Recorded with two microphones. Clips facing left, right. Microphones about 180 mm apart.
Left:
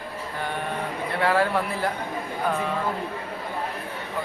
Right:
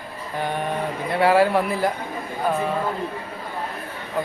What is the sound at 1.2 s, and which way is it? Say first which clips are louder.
Speech: right 5 dB; 10° right (ahead or behind).